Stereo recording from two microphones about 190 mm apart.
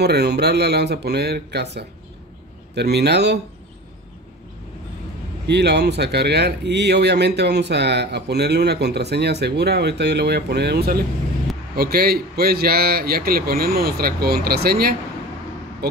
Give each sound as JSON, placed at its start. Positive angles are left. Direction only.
{"t": 0.0, "sound": "speech", "side_deg": -60}
{"t": 5.5, "sound": "a man's voice", "side_deg": -60}